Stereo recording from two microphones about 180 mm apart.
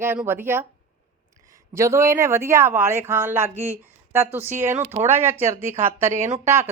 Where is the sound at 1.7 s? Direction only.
15° right (ahead or behind).